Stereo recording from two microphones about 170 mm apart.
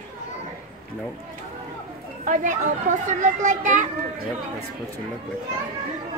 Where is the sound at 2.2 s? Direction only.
50° right (ahead or behind).